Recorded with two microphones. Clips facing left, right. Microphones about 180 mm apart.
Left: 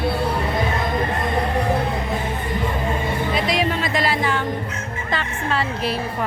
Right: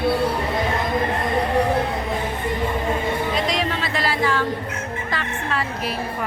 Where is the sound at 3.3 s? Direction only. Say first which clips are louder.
Left 2 dB; 10° left (ahead or behind).